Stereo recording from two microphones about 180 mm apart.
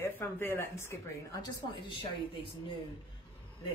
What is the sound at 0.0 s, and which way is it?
Speech, 10° left (ahead or behind).